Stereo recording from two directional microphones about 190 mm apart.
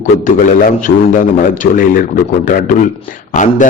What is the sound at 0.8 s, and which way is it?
A man's voice, 45° left (ahead or behind).